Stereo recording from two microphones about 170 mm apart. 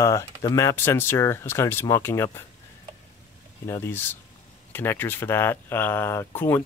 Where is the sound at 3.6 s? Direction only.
15° left (ahead or behind).